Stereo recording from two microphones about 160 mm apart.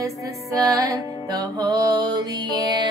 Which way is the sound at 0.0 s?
20° right (ahead or behind).